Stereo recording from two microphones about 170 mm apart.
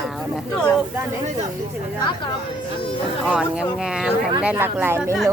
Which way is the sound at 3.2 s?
5° right (ahead or behind).